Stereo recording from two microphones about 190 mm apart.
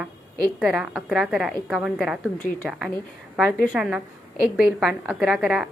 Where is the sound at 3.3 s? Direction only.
Centre (ahead or behind).